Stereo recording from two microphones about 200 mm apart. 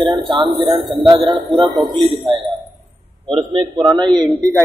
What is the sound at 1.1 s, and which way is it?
Speech, 25° right (ahead or behind).